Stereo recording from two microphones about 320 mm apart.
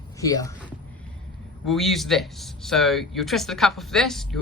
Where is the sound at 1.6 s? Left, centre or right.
Centre.